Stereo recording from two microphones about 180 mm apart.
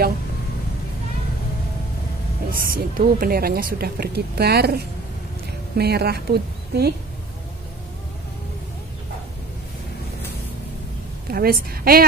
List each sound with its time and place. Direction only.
2.6 s a woman's voice: 55° right (ahead or behind)
11.3 s a woman's voice: 55° right (ahead or behind)